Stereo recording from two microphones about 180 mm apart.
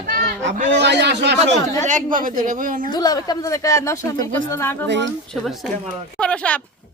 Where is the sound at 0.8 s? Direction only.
70° right (ahead or behind).